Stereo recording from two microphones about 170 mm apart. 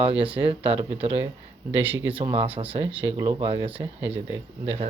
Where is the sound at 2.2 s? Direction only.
30° right (ahead or behind).